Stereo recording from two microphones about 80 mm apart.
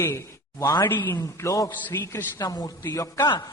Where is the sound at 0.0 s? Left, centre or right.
Left.